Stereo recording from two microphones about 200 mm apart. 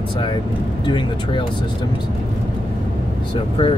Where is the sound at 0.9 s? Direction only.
25° left (ahead or behind).